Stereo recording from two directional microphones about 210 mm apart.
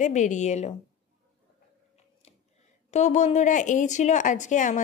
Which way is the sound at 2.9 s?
35° left (ahead or behind).